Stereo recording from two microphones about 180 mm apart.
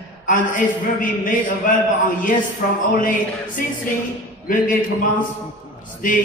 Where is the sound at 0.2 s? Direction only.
50° left (ahead or behind).